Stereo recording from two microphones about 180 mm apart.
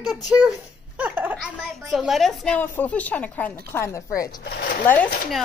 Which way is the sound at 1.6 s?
Centre (ahead or behind).